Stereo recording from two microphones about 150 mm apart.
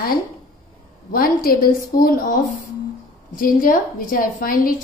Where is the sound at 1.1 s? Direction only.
75° left (ahead or behind).